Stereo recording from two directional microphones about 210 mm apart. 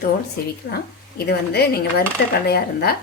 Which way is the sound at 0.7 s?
50° left (ahead or behind).